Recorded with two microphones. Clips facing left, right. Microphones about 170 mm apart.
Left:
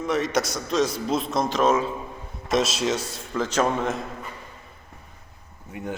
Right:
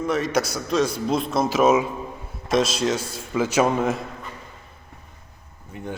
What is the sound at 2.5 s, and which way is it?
A man's voice, centre (ahead or behind).